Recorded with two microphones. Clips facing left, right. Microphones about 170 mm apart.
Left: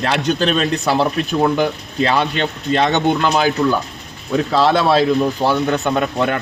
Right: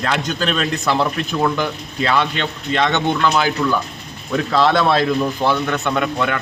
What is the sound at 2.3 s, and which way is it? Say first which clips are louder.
Speech: left 3 dB; 35° left (ahead or behind).